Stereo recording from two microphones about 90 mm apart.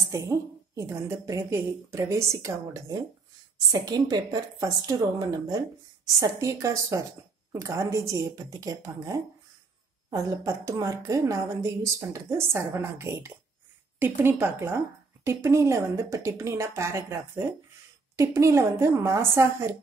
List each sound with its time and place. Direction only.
0.1 s a woman's voice: 35° right (ahead or behind)
3.7 s a woman's voice: 50° right (ahead or behind); by 19.7 s 30° right (ahead or behind)